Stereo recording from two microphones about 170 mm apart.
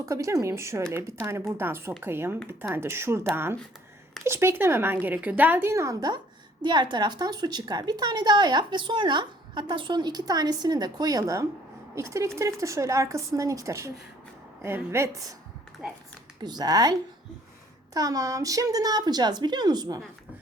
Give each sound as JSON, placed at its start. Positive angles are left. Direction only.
{"t": 0.0, "sound": "a woman's voice", "side_deg": -15}
{"t": 16.4, "sound": "a woman's voice", "side_deg": -25}
{"t": 17.9, "sound": "a woman's voice", "side_deg": -20}